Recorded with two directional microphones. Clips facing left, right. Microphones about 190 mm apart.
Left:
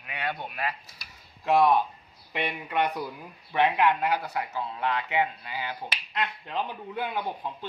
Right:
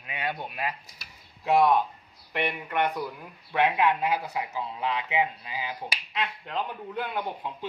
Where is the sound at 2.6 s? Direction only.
15° left (ahead or behind).